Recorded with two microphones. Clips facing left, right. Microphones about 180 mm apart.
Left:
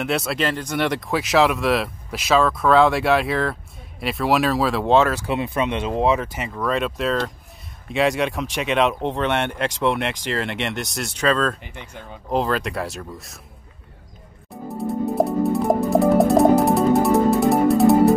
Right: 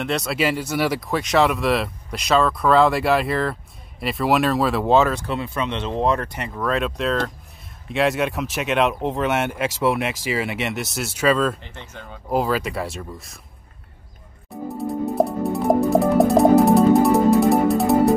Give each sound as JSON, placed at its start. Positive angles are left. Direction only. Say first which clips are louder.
{"t": 0.0, "sound": "speech", "louder": "left 1 dB", "side_deg": 0}
{"t": 0.4, "sound": "speech", "louder": "right 1 dB", "side_deg": -10}
{"t": 5.3, "sound": "speech", "louder": "left 3 dB", "side_deg": 15}
{"t": 11.6, "sound": "speech", "louder": "left 1 dB", "side_deg": 10}
{"t": 12.3, "sound": "speech", "louder": "even", "side_deg": -5}
{"t": 14.8, "sound": "music", "louder": "even", "side_deg": 0}